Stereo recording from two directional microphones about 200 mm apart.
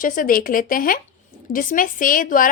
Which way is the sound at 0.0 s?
45° left (ahead or behind).